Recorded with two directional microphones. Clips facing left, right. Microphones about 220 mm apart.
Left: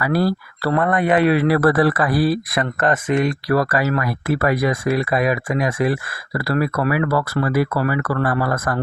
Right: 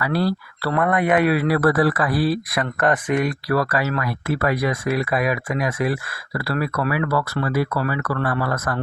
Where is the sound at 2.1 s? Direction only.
Centre (ahead or behind).